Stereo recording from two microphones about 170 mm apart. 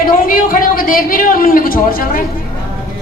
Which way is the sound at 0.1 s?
55° left (ahead or behind).